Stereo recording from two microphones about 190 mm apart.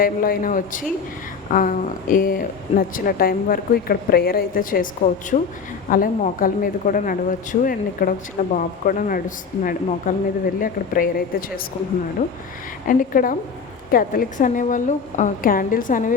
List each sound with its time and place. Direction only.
0.0 s speech: 50° left (ahead or behind)
12.9 s speech: 45° left (ahead or behind)